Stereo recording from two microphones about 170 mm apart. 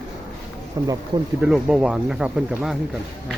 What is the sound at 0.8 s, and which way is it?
Speech, 20° right (ahead or behind).